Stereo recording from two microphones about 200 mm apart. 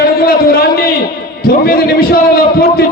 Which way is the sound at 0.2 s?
50° left (ahead or behind).